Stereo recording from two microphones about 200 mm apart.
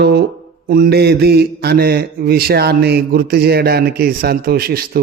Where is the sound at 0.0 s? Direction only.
55° right (ahead or behind).